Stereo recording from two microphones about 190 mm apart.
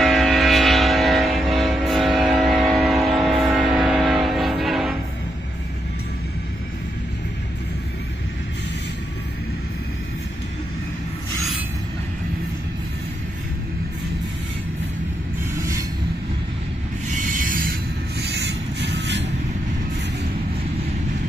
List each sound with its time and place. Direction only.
0.0 s vehicle: centre (ahead or behind)
17.1 s a sound: 40° right (ahead or behind)
18.2 s vehicle: 60° right (ahead or behind)